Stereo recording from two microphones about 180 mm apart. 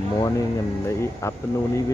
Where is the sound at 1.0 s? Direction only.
15° left (ahead or behind).